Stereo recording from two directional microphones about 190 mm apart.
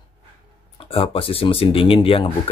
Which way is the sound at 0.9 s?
30° left (ahead or behind).